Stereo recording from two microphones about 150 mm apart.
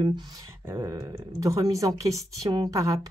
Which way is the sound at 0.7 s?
20° right (ahead or behind).